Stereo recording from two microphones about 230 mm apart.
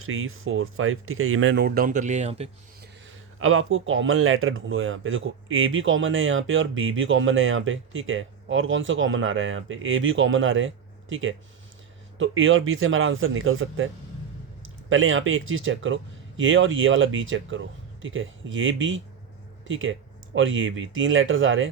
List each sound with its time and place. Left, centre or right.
0.0 s speech: right
3.3 s speech: right